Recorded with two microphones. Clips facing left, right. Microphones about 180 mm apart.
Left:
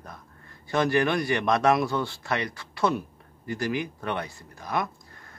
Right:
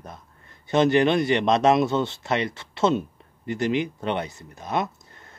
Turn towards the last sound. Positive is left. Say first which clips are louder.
# right 3 dB
turn(degrees=-25)  # may be behind; listen again after turning